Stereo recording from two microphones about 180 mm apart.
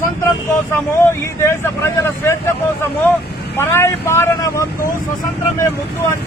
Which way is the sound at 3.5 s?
15° left (ahead or behind).